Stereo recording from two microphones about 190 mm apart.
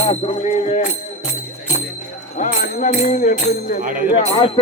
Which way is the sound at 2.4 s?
40° left (ahead or behind).